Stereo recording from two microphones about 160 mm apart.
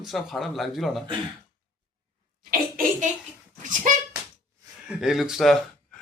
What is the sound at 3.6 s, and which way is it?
Speech, 55° right (ahead or behind).